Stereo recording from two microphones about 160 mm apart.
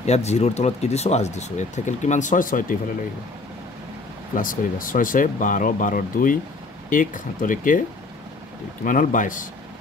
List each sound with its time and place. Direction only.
0.0 s speech: 40° left (ahead or behind)
4.4 s speech: 60° left (ahead or behind)
8.8 s speech: 55° left (ahead or behind)